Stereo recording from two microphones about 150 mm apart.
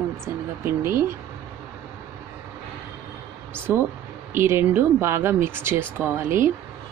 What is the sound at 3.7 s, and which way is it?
Speech, 15° right (ahead or behind).